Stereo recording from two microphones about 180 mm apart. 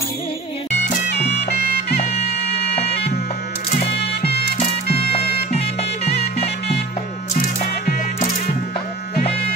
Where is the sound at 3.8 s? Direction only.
65° left (ahead or behind).